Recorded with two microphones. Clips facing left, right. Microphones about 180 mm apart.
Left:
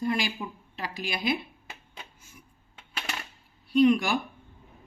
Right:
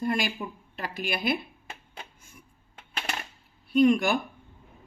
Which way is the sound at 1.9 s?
50° right (ahead or behind).